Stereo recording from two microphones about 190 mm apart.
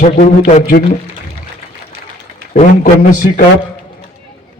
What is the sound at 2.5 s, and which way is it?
Speech, 45° left (ahead or behind).